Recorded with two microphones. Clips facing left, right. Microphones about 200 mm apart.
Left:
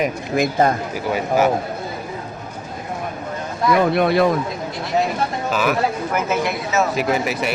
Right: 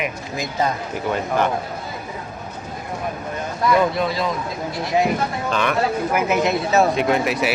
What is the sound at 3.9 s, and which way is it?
Speech, 60° left (ahead or behind).